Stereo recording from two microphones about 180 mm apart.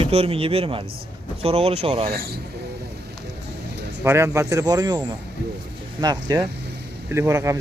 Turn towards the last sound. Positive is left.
turn(degrees=-15)  # may be behind; listen again after turning